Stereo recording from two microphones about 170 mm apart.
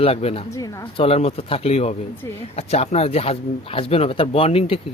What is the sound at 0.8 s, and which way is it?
Speech, 35° left (ahead or behind).